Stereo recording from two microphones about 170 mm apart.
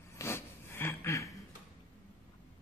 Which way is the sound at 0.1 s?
15° left (ahead or behind).